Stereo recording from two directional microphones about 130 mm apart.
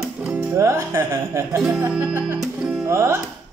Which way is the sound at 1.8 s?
10° right (ahead or behind).